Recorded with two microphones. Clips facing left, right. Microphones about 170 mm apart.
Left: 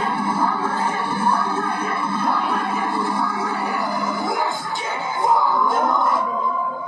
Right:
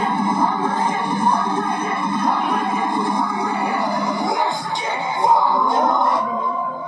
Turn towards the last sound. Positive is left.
turn(degrees=-20)  # may be behind; listen again after turning